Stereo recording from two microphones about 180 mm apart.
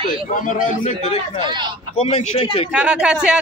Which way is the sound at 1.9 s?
40° left (ahead or behind).